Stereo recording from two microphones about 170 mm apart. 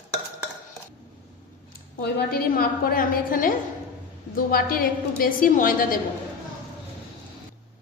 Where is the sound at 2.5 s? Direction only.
60° left (ahead or behind).